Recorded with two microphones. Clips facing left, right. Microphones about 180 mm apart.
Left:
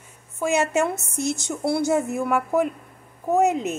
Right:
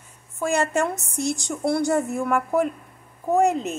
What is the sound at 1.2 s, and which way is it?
Speech, 15° right (ahead or behind).